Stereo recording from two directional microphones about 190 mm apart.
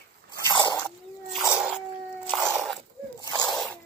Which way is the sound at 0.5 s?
25° left (ahead or behind).